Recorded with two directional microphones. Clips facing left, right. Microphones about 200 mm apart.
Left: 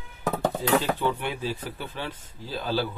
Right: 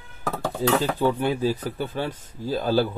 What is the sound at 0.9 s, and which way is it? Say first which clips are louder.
Speech: right 6 dB; 40° right (ahead or behind).